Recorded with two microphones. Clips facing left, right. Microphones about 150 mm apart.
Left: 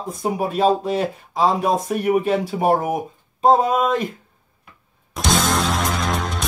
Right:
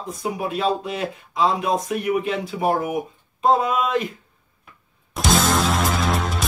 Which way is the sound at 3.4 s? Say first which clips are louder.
Left 3 dB; 45° left (ahead or behind).